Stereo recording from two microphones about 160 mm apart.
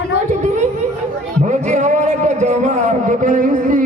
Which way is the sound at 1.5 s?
45° right (ahead or behind).